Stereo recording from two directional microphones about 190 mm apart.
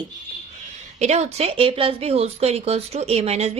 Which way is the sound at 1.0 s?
35° right (ahead or behind).